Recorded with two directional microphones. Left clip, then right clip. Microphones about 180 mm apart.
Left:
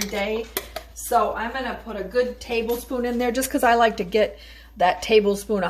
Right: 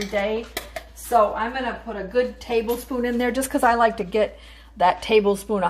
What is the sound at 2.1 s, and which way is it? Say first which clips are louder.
A woman's voice: right 1 dB; centre (ahead or behind).